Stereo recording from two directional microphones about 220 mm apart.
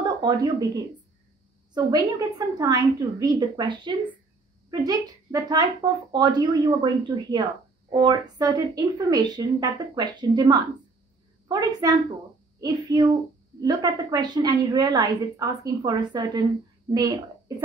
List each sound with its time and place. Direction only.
0.0 s speech: 20° right (ahead or behind)
1.7 s a woman's voice: 20° right (ahead or behind)